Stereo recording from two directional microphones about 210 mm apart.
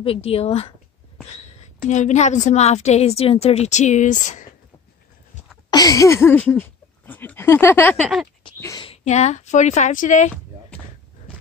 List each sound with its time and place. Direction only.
0.0 s a woman's voice: 25° left (ahead or behind)
1.9 s a woman's voice: 35° left (ahead or behind)
5.7 s speech: 15° left (ahead or behind); by 8.3 s centre (ahead or behind)
8.5 s speech: 15° left (ahead or behind)
8.8 s a woman's voice: 30° left (ahead or behind)